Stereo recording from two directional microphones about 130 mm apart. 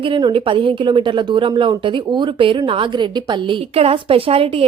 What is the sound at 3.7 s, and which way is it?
Speech, 50° right (ahead or behind).